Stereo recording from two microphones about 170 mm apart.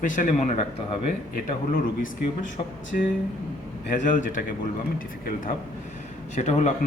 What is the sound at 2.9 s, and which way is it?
A man's voice, 55° left (ahead or behind).